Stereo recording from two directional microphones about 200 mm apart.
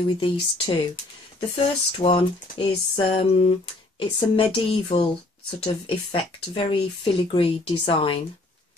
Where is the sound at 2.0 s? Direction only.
25° left (ahead or behind).